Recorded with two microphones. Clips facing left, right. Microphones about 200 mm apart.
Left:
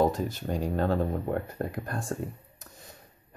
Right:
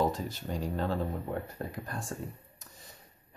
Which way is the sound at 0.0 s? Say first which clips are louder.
Left 5 dB; 50° left (ahead or behind).